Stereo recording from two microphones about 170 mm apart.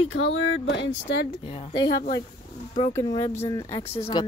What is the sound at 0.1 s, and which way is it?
Speech, 90° left.